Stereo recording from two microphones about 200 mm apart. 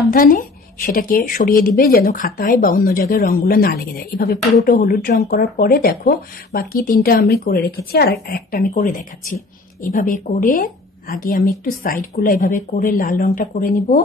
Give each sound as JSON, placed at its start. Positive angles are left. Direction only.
{"t": 0.1, "sound": "a woman's voice", "side_deg": 45}